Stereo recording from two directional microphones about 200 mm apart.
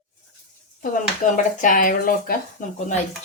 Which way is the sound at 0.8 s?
40° left (ahead or behind).